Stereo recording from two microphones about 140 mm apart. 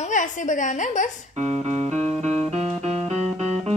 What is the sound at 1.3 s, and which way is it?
Music, 55° right (ahead or behind).